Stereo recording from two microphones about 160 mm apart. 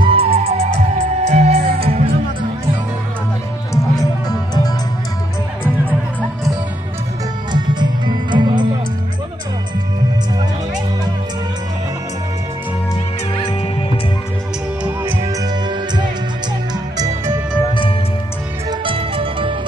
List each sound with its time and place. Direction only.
0.0 s music: 35° right (ahead or behind)
3.7 s music: 25° left (ahead or behind)
7.5 s music: 30° right (ahead or behind)
16.9 s music: 25° right (ahead or behind)
18.7 s music: 35° right (ahead or behind)